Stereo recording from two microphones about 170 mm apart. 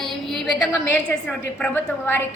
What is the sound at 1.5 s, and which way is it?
Speech, 10° left (ahead or behind).